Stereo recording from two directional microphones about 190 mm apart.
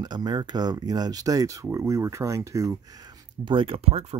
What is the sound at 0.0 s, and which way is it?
Speech, 20° right (ahead or behind).